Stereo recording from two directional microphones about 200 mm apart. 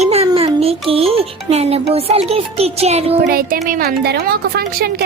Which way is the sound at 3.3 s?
45° right (ahead or behind).